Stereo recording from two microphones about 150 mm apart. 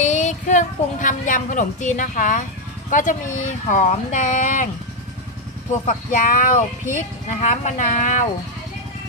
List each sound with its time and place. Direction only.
0.0 s speech: 50° left (ahead or behind)
5.9 s speech: 60° left (ahead or behind)